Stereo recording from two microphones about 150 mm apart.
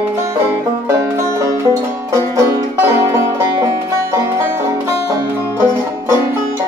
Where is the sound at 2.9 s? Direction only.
20° right (ahead or behind).